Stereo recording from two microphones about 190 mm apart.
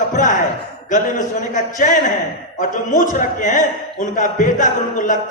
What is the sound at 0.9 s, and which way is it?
A man's voice, 40° left (ahead or behind).